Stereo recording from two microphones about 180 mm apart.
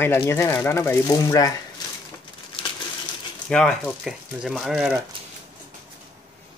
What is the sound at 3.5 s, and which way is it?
Speech, 5° left (ahead or behind).